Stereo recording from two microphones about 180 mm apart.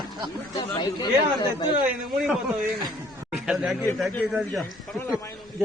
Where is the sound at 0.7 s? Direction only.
25° left (ahead or behind).